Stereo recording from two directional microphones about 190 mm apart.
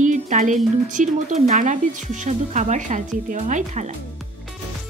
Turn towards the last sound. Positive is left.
turn(degrees=-40)  # may be behind; listen again after turning